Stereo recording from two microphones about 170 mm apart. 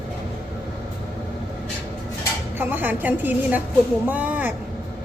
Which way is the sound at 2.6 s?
10° right (ahead or behind).